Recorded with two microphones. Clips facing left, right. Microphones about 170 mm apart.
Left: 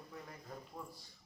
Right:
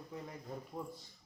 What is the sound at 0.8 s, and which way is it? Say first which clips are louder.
Speech: right 6 dB; 25° right (ahead or behind).